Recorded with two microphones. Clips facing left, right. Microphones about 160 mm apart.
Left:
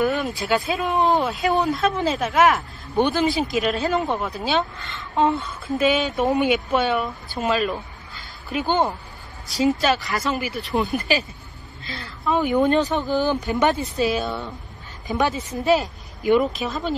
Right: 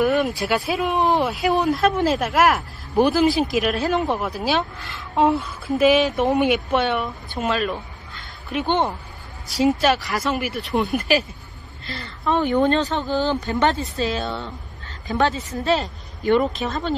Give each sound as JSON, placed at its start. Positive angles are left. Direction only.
{"t": 0.0, "sound": "speech", "side_deg": 0}
{"t": 16.3, "sound": "speech", "side_deg": 5}